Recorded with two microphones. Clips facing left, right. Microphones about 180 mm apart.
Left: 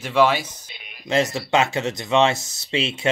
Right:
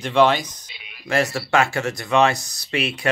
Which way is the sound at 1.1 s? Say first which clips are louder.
Even; 20° left (ahead or behind).